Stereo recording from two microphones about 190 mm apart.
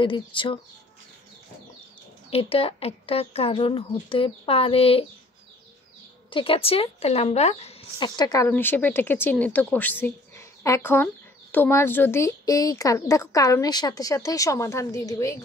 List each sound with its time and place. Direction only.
0.0 s speech: 25° left (ahead or behind)
2.3 s speech: 30° left (ahead or behind)
6.3 s speech: 30° left (ahead or behind)
8.5 s a woman's voice: 10° left (ahead or behind)